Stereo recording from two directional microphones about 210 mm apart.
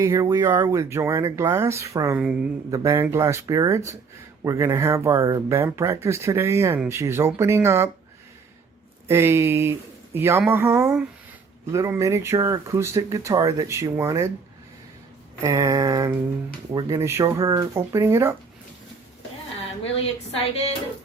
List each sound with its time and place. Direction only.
0.0 s speech: 15° right (ahead or behind)
2.6 s speech: 15° right (ahead or behind)
9.0 s speech: 10° right (ahead or behind)
15.4 s speech: 15° right (ahead or behind)
19.8 s a woman's voice: 30° left (ahead or behind)